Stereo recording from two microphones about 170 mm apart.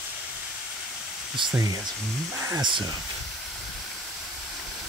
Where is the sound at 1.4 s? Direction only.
30° right (ahead or behind).